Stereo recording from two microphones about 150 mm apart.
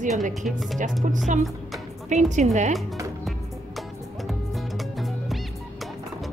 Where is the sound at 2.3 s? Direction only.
50° right (ahead or behind).